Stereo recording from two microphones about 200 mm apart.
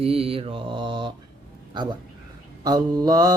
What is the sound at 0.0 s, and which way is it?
Mantra, 30° right (ahead or behind).